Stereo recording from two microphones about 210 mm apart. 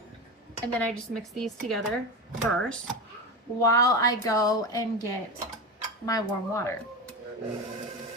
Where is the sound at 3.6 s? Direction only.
15° left (ahead or behind).